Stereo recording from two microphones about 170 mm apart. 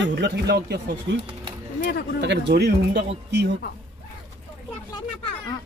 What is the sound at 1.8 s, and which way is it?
Speech, 60° left (ahead or behind).